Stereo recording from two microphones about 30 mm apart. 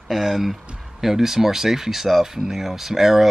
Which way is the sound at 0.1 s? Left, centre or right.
Centre.